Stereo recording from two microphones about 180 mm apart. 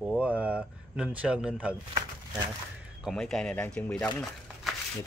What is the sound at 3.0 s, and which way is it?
Speech, centre (ahead or behind).